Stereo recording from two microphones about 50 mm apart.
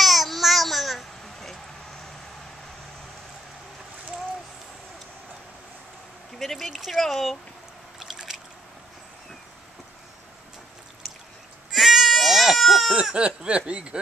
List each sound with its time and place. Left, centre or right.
0.0 s babbling: centre
6.3 s speech: centre
8.0 s a sound: centre
11.7 s sheep: centre
13.1 s speech: right